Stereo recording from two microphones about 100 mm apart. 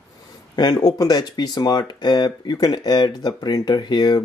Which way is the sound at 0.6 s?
40° left (ahead or behind).